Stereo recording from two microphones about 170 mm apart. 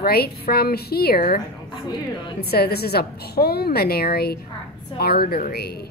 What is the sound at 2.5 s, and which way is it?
A woman's voice, 70° left (ahead or behind).